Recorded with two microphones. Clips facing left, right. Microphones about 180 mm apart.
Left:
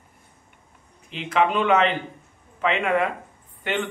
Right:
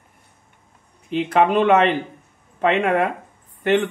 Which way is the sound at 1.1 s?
40° right (ahead or behind).